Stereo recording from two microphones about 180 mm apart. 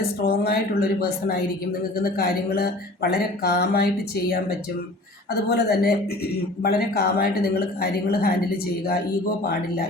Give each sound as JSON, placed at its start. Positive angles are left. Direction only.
{"t": 0.3, "sound": "speech", "side_deg": 55}
{"t": 2.1, "sound": "speech", "side_deg": 60}